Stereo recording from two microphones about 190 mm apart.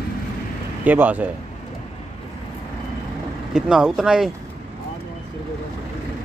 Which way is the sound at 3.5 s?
5° right (ahead or behind).